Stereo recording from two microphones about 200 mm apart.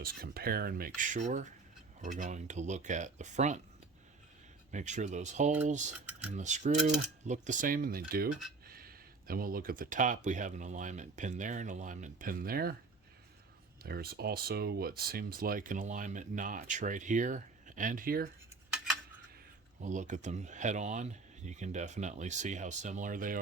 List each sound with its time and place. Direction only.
0.0 s speech: 50° right (ahead or behind)
4.7 s speech: 35° right (ahead or behind)
13.8 s speech: 50° right (ahead or behind)
19.8 s speech: 40° right (ahead or behind)